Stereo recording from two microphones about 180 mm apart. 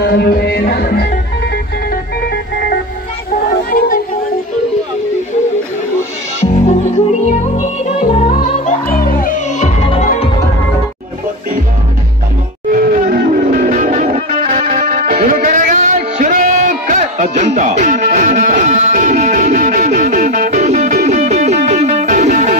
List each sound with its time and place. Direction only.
0.0 s music: 65° left (ahead or behind)
6.4 s music: 40° left (ahead or behind)
13.0 s music: 50° right (ahead or behind)